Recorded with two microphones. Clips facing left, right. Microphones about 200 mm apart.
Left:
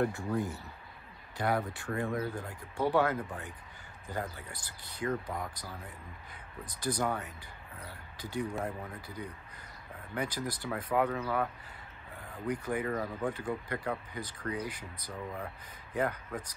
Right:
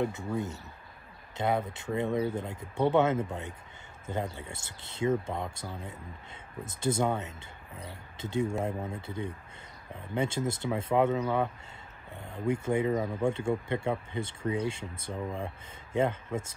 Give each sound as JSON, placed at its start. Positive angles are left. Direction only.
{"t": 1.3, "sound": "speech", "side_deg": -20}